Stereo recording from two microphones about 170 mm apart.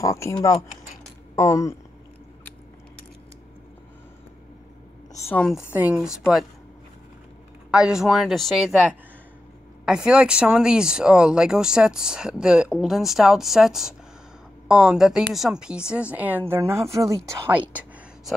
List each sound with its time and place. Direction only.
0.0 s speech: 20° left (ahead or behind)
5.2 s speech: 10° left (ahead or behind)
5.5 s speech: 10° right (ahead or behind)
7.7 s a woman's voice: 5° right (ahead or behind)